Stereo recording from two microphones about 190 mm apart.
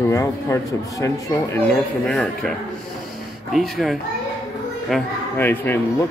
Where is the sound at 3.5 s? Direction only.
Centre (ahead or behind).